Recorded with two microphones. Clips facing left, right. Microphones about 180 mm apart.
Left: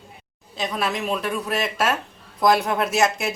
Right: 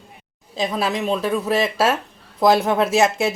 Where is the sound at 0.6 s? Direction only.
30° right (ahead or behind).